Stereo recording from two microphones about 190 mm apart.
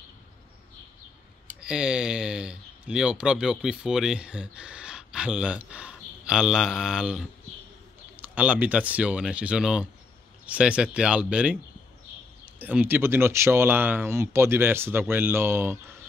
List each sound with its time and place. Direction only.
1.6 s speech: 5° right (ahead or behind)
12.5 s speech: 10° right (ahead or behind)